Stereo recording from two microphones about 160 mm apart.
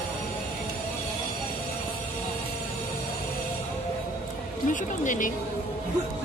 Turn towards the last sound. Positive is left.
turn(degrees=55)  # may be behind; listen again after turning